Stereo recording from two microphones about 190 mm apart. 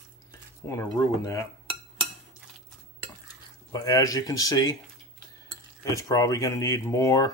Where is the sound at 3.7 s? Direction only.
20° left (ahead or behind).